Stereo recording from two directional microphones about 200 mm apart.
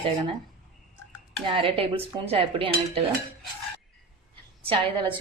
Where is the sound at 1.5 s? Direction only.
30° right (ahead or behind).